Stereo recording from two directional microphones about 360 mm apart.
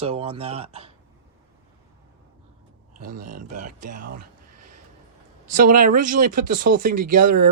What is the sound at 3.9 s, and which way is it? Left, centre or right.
Speech, right.